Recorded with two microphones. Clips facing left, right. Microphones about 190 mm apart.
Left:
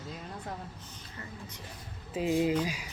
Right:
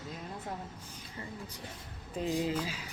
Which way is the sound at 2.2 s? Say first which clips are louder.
Left 5 dB; 15° left (ahead or behind).